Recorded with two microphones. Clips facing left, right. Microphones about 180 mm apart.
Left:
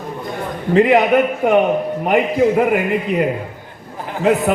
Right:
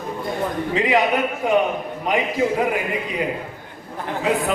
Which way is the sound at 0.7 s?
55° left (ahead or behind).